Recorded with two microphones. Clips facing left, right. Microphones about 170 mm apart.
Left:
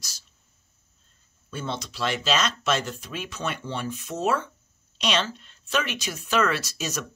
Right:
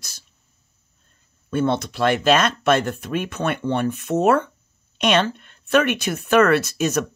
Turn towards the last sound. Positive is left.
turn(degrees=-60)  # may be behind; listen again after turning